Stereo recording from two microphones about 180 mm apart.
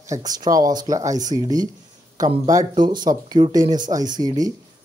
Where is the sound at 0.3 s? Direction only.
20° right (ahead or behind).